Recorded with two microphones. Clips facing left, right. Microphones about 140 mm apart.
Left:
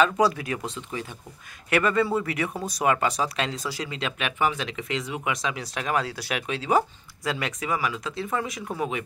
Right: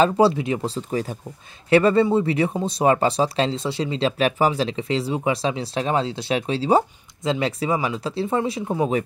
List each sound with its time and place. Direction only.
0.0 s speech: 30° right (ahead or behind)